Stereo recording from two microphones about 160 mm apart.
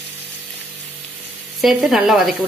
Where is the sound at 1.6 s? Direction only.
Centre (ahead or behind).